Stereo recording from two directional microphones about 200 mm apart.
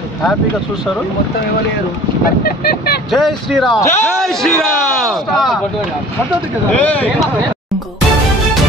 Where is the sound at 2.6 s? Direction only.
50° left (ahead or behind).